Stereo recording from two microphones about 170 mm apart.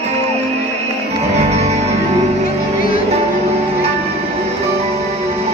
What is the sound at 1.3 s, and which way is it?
Music, 40° right (ahead or behind).